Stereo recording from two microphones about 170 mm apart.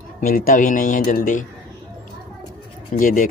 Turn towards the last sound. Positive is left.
turn(degrees=50)  # may be behind; listen again after turning